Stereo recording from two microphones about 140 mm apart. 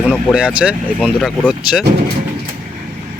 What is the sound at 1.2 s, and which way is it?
Speech, 5° left (ahead or behind).